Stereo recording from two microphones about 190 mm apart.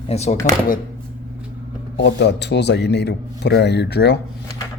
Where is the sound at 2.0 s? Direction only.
65° left (ahead or behind).